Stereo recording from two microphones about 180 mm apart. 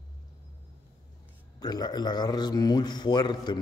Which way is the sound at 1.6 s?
20° left (ahead or behind).